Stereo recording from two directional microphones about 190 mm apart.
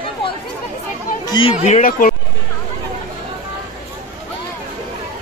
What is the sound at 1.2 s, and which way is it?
Chatter, 25° left (ahead or behind).